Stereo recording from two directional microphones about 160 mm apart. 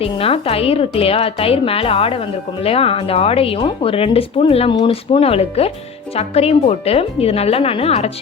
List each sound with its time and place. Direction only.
0.0 s a woman's voice: 35° left (ahead or behind)